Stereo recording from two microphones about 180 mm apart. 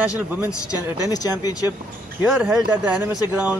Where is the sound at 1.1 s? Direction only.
20° left (ahead or behind).